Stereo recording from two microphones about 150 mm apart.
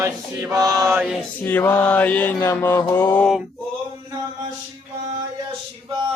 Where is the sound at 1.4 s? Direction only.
10° left (ahead or behind).